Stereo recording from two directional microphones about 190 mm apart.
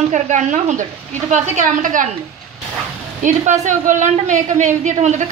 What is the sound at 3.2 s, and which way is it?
A man's voice, 40° right (ahead or behind).